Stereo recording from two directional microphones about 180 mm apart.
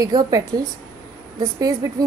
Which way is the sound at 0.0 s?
20° right (ahead or behind).